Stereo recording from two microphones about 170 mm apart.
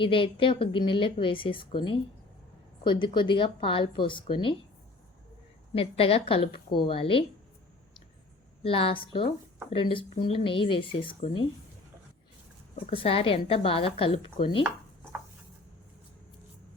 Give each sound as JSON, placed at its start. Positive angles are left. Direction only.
{"t": 0.0, "sound": "a woman's voice", "side_deg": 30}
{"t": 5.7, "sound": "a woman's voice", "side_deg": 35}
{"t": 8.6, "sound": "a woman's voice", "side_deg": 35}
{"t": 12.7, "sound": "a woman's voice", "side_deg": 35}